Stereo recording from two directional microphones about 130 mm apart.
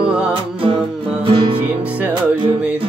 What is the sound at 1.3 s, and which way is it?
Music, 40° right (ahead or behind).